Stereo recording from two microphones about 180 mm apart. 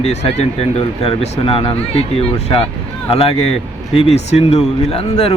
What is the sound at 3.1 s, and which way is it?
Speech, 35° left (ahead or behind).